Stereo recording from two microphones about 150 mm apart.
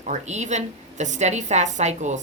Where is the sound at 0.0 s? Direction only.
50° right (ahead or behind).